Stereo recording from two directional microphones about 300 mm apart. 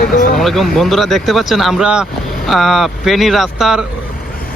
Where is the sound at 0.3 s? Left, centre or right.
Centre.